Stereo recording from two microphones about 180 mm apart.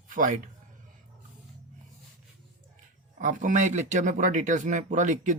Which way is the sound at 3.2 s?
45° right (ahead or behind).